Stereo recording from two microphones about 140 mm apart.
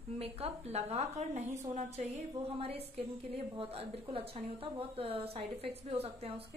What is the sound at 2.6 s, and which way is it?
A woman's voice, 45° right (ahead or behind).